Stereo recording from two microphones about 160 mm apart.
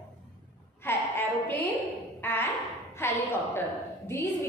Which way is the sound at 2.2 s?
15° left (ahead or behind).